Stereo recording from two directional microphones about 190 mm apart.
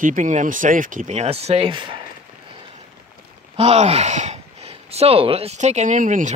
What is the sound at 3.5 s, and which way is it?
Speech, 30° right (ahead or behind).